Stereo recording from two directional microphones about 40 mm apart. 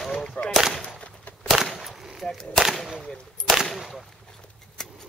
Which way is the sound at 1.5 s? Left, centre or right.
Centre.